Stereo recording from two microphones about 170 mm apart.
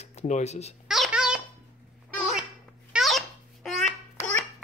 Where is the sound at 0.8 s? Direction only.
Centre (ahead or behind).